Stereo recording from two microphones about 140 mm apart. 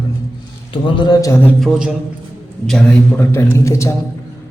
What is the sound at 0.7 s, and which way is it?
Speech, 35° left (ahead or behind).